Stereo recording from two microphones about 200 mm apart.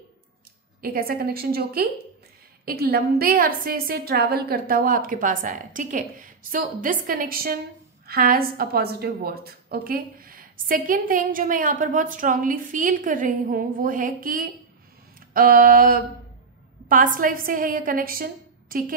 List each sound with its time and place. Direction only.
0.7 s a woman's voice: 45° right (ahead or behind)
15.1 s a sound: 45° right (ahead or behind)
16.9 s a woman's voice: 40° right (ahead or behind)